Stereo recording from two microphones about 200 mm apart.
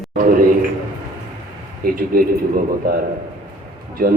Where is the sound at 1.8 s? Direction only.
45° right (ahead or behind).